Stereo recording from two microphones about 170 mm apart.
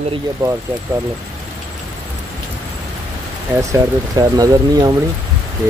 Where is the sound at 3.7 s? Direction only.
20° right (ahead or behind).